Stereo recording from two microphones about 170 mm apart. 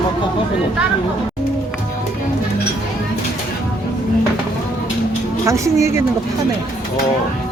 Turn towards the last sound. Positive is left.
turn(degrees=-15)  # may be behind; listen again after turning